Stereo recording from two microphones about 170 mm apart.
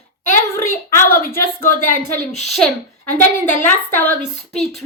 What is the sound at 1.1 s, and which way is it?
Speech, 60° left (ahead or behind).